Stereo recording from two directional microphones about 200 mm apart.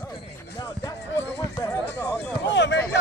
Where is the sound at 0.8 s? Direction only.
15° left (ahead or behind).